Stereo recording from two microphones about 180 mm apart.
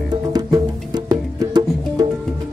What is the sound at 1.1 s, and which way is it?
Music, 20° right (ahead or behind).